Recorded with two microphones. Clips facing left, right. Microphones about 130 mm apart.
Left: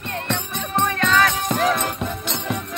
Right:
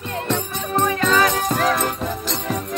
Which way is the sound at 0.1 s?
5° right (ahead or behind).